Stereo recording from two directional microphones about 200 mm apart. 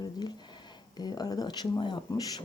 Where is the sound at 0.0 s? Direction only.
20° left (ahead or behind).